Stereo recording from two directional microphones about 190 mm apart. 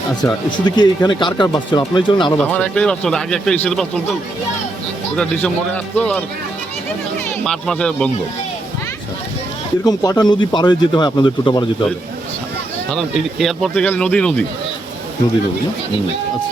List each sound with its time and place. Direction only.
0.2 s speech: 20° left (ahead or behind)
2.4 s speech: 5° left (ahead or behind)
5.1 s a man's voice: 5° left (ahead or behind)
7.4 s speech: 5° left (ahead or behind)
9.8 s speech: 20° left (ahead or behind)
12.9 s speech: centre (ahead or behind)